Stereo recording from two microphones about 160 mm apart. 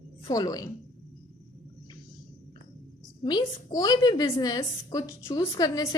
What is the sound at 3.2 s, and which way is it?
A woman's voice, 25° left (ahead or behind).